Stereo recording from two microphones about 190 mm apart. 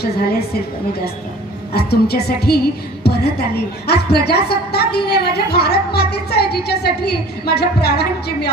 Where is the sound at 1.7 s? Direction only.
55° left (ahead or behind).